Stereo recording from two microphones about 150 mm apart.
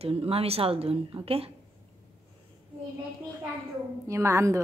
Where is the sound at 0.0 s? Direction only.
40° right (ahead or behind).